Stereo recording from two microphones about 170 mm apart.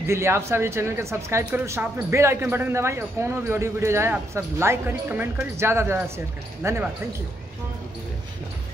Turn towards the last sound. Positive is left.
turn(degrees=-15)  # may be behind; listen again after turning